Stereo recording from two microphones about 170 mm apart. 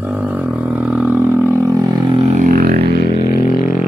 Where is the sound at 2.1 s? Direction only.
45° right (ahead or behind).